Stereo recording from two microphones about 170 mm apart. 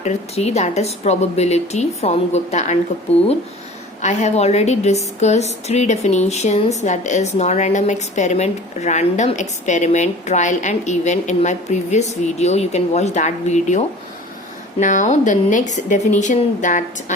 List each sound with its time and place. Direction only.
0.0 s a woman's voice: 40° left (ahead or behind)
4.0 s a woman's voice: 45° left (ahead or behind)